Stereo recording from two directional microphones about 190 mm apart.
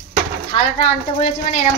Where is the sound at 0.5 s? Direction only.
25° left (ahead or behind).